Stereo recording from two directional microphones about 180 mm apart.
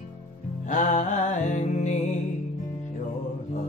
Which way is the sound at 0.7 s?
45° left (ahead or behind).